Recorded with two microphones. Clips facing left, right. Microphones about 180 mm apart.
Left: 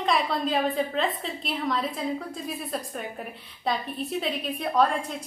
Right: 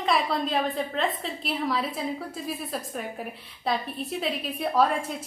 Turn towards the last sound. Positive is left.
turn(degrees=-5)  # may be behind; listen again after turning